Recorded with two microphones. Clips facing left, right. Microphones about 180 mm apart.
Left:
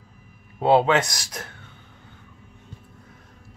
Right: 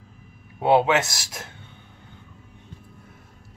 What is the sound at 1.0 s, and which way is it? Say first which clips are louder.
Speech: left 1 dB; 25° right (ahead or behind).